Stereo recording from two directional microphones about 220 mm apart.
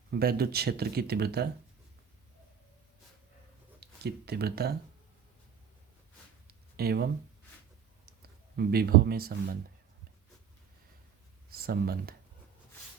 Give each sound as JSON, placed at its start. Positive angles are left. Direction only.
{"t": 0.1, "sound": "speech", "side_deg": -45}
{"t": 3.8, "sound": "speech", "side_deg": -45}
{"t": 6.5, "sound": "a sound", "side_deg": -45}
{"t": 8.0, "sound": "speech", "side_deg": -45}
{"t": 11.4, "sound": "speech", "side_deg": -45}